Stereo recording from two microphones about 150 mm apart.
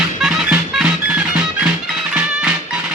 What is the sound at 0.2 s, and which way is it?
Music, 5° right (ahead or behind).